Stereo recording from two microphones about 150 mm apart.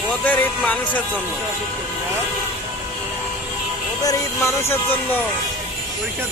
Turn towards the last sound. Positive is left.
turn(degrees=15)  # may be behind; listen again after turning